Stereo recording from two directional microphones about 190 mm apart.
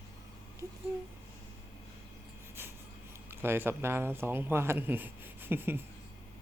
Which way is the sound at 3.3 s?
10° right (ahead or behind).